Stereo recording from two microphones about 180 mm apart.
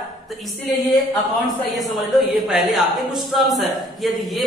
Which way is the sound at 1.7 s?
Centre (ahead or behind).